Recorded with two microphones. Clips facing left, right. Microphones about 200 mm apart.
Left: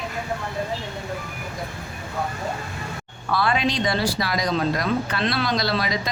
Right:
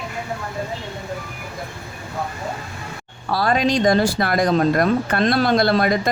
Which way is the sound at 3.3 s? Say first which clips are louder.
Right 4 dB; 40° right (ahead or behind).